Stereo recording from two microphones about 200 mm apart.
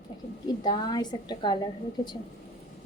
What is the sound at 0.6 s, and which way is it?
Speech, 20° left (ahead or behind).